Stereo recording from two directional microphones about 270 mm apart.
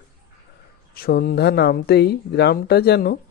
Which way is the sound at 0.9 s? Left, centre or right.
Left.